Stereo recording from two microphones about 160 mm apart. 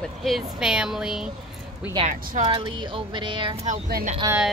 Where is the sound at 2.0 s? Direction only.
50° right (ahead or behind).